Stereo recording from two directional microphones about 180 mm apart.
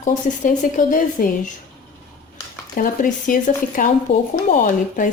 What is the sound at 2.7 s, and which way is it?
A woman's voice, 50° left (ahead or behind).